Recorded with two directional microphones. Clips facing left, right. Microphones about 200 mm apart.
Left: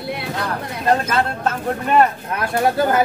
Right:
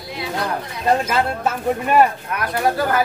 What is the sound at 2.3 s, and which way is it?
Speech, 25° left (ahead or behind).